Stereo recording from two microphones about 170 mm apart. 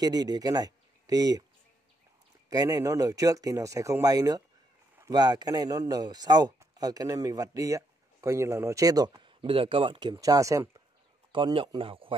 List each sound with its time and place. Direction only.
0.0 s speech: 25° right (ahead or behind)
2.5 s speech: 20° right (ahead or behind)
11.3 s speech: 30° right (ahead or behind)